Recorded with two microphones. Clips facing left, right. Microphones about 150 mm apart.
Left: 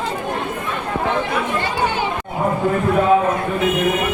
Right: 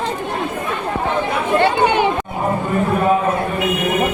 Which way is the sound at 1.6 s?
60° right (ahead or behind).